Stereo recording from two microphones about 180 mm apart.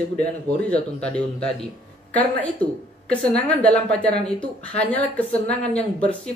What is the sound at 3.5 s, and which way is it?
A man's voice, 5° left (ahead or behind).